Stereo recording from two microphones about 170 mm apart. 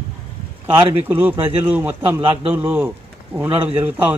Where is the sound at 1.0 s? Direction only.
10° right (ahead or behind).